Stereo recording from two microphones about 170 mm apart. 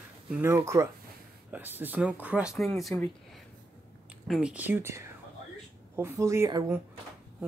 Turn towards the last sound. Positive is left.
turn(degrees=-15)  # may be behind; listen again after turning